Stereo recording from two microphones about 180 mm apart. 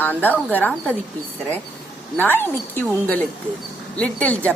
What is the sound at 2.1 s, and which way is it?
Speech, 10° left (ahead or behind).